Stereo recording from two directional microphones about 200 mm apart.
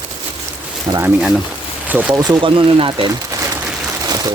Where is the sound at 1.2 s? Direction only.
5° right (ahead or behind).